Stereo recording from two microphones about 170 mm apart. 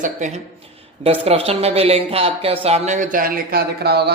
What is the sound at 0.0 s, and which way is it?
A man's voice, 45° right (ahead or behind).